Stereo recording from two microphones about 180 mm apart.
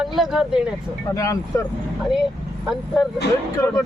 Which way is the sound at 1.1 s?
20° left (ahead or behind).